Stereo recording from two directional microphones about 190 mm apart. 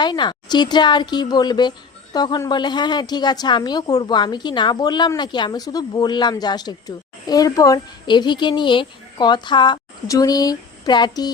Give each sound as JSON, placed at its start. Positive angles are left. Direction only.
{"t": 0.0, "sound": "a woman's voice", "side_deg": 25}